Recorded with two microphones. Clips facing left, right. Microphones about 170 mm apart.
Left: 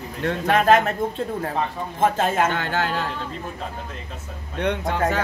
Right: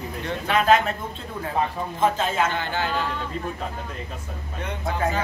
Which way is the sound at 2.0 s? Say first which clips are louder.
Left 2 dB; 50° left (ahead or behind).